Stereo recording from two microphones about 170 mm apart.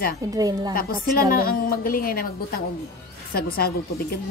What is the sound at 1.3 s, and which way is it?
A woman's voice, 60° left (ahead or behind).